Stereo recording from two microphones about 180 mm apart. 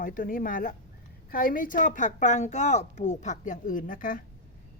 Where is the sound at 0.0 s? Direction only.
50° left (ahead or behind).